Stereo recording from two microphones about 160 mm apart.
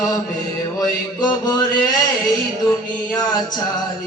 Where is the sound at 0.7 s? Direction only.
25° left (ahead or behind).